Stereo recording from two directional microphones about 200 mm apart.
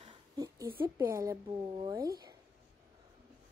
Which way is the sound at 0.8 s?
15° right (ahead or behind).